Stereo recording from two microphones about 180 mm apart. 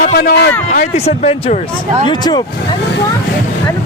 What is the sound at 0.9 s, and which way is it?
Speech, 35° left (ahead or behind).